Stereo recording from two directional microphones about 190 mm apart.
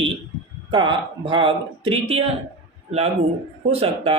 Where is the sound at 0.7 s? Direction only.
25° right (ahead or behind).